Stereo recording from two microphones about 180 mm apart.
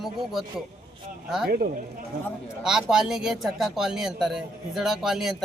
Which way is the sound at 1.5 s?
55° right (ahead or behind).